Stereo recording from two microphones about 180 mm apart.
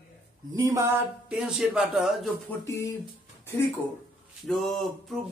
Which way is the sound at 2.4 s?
15° left (ahead or behind).